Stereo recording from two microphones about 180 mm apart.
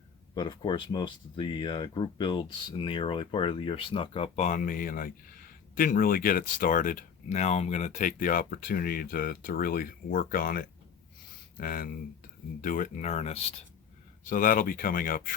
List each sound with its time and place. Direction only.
0.3 s speech: 25° left (ahead or behind)
14.3 s speech: 50° left (ahead or behind)